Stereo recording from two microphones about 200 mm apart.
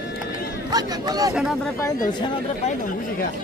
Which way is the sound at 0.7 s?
20° right (ahead or behind).